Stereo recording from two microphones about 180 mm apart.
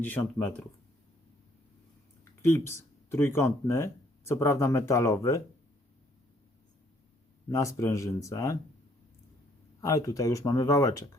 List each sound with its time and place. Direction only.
0.0 s speech: 10° left (ahead or behind)
2.4 s speech: 15° left (ahead or behind)
7.5 s speech: 15° left (ahead or behind)
9.8 s speech: 20° left (ahead or behind)